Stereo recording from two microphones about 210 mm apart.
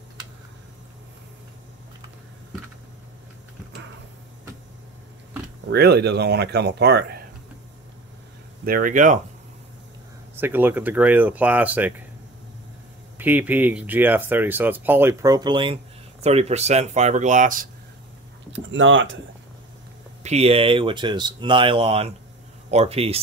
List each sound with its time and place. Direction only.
5.7 s speech: 50° right (ahead or behind)
8.6 s speech: 40° right (ahead or behind)
10.3 s speech: 10° right (ahead or behind)
13.2 s speech: 10° right (ahead or behind); by 17.6 s 40° right (ahead or behind)
18.5 s speech: 65° right (ahead or behind)
20.2 s speech: 30° right (ahead or behind)